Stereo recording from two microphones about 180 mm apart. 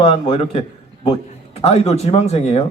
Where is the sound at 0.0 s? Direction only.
35° left (ahead or behind).